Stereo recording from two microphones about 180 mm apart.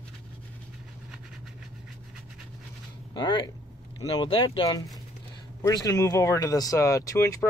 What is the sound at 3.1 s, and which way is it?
Speech, 25° left (ahead or behind).